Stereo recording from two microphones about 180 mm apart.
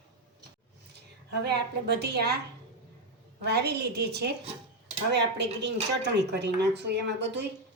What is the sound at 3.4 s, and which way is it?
A woman's voice, 65° right (ahead or behind).